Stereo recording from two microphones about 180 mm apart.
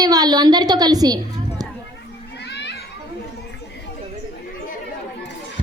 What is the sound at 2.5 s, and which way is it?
Children playing, 75° left (ahead or behind).